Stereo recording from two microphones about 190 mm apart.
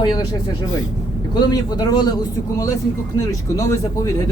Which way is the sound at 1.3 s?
20° left (ahead or behind).